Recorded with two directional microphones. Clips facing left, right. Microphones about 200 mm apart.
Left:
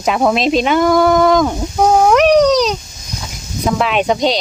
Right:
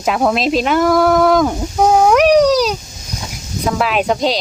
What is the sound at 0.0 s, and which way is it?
Speech, centre (ahead or behind).